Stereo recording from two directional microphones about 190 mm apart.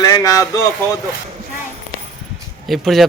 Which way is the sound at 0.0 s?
20° left (ahead or behind).